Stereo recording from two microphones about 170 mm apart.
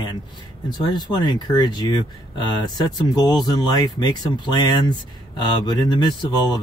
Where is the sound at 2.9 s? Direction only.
25° left (ahead or behind).